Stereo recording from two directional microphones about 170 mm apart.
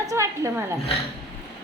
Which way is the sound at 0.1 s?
15° right (ahead or behind).